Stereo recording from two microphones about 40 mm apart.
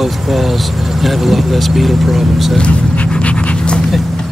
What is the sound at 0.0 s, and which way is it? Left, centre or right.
Speech, centre.